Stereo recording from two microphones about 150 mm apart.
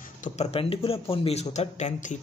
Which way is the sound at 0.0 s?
55° left (ahead or behind).